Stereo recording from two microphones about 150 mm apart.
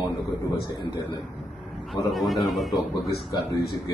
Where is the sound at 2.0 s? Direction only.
Centre (ahead or behind).